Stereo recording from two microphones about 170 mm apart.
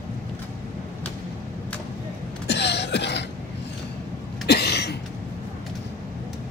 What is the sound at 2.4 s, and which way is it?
Cough, 90° left.